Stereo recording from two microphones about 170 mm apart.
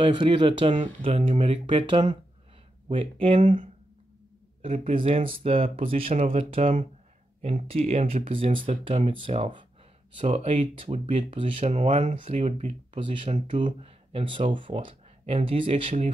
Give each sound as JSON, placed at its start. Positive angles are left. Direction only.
{"t": 0.0, "sound": "speech", "side_deg": -30}
{"t": 11.7, "sound": "speech", "side_deg": -45}